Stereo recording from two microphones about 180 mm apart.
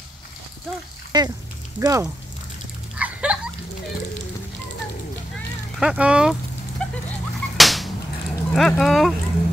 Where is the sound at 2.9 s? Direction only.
5° right (ahead or behind).